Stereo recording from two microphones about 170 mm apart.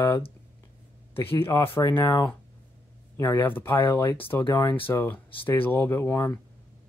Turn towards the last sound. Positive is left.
turn(degrees=15)  # may be behind; listen again after turning